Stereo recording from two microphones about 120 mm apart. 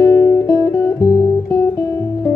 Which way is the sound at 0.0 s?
15° left (ahead or behind).